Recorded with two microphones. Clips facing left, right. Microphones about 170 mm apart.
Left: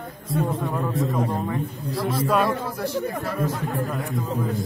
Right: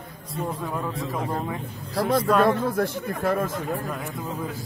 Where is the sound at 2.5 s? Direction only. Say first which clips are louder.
Right 3 dB; 50° right (ahead or behind).